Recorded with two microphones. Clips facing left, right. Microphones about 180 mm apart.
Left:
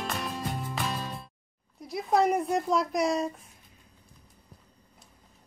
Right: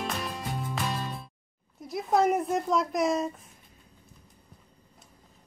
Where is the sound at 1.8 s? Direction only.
Centre (ahead or behind).